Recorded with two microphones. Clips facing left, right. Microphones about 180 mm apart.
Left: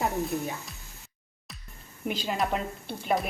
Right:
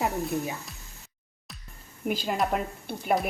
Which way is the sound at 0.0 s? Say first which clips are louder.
Right 1 dB; centre (ahead or behind).